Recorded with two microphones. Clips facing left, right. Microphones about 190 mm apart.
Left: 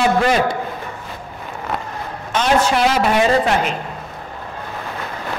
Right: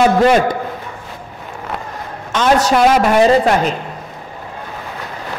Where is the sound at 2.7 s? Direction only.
40° right (ahead or behind).